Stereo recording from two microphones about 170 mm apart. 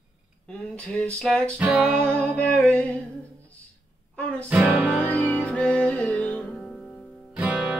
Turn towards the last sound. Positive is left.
turn(degrees=-10)  # may be behind; listen again after turning